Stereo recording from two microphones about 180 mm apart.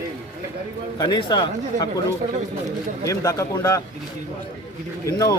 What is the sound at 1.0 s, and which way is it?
Speech, 25° left (ahead or behind).